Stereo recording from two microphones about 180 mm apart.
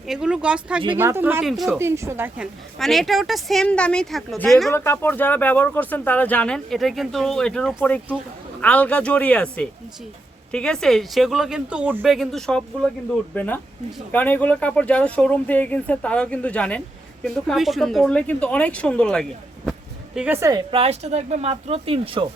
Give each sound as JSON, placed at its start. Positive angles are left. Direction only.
{"t": 0.1, "sound": "speech", "side_deg": -5}
{"t": 1.8, "sound": "speech", "side_deg": -15}
{"t": 2.7, "sound": "speech", "side_deg": 0}
{"t": 4.7, "sound": "speech", "side_deg": 15}
{"t": 20.1, "sound": "a woman's voice", "side_deg": -10}